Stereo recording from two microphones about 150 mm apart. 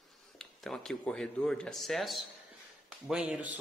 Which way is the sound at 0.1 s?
Centre (ahead or behind).